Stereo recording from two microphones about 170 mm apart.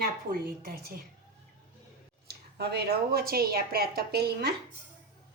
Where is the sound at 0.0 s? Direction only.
60° right (ahead or behind).